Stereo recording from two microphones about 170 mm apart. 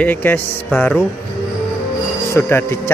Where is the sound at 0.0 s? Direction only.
10° left (ahead or behind).